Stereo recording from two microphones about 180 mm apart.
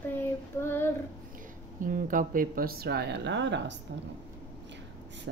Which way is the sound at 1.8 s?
50° right (ahead or behind).